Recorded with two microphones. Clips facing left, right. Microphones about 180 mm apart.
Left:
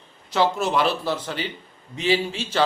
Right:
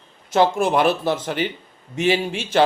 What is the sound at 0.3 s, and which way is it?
A man's voice, 50° right (ahead or behind).